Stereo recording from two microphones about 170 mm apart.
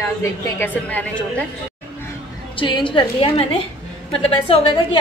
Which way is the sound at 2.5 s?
30° left (ahead or behind).